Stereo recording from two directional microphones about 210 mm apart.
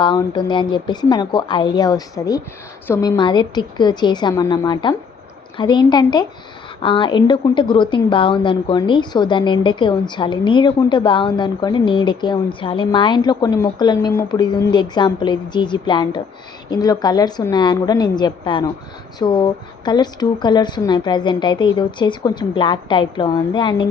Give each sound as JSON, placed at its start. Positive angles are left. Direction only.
{"t": 0.0, "sound": "a woman's voice", "side_deg": 20}